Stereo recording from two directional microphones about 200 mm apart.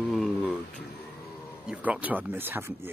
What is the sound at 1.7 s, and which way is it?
Speech, 5° right (ahead or behind).